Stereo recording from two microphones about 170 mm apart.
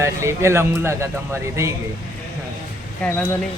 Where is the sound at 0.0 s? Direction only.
15° right (ahead or behind).